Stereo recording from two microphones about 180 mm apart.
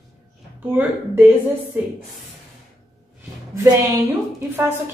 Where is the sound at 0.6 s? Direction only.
10° right (ahead or behind).